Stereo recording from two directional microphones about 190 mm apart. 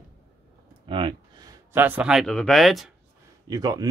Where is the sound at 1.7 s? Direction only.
10° right (ahead or behind).